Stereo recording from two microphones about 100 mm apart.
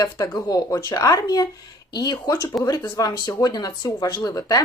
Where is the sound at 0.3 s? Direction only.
35° left (ahead or behind).